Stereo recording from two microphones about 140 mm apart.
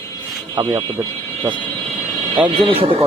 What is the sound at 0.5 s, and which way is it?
Speech, 30° right (ahead or behind).